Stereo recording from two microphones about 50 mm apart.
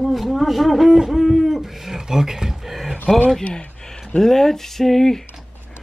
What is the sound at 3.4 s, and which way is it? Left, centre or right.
Speech, left.